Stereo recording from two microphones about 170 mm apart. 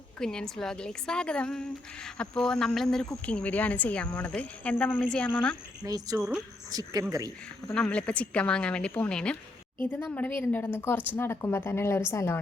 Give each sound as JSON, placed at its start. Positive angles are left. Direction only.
{"t": 0.2, "sound": "speech", "side_deg": 5}
{"t": 5.8, "sound": "speech", "side_deg": -20}
{"t": 6.1, "sound": "speech", "side_deg": -5}
{"t": 6.7, "sound": "speech", "side_deg": -20}
{"t": 7.7, "sound": "speech", "side_deg": 5}